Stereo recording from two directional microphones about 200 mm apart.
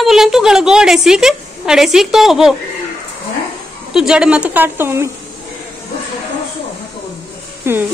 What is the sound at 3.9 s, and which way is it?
A woman's voice, 5° right (ahead or behind).